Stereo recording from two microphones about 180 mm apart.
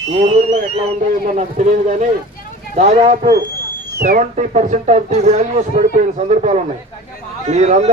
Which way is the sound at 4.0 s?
55° right (ahead or behind).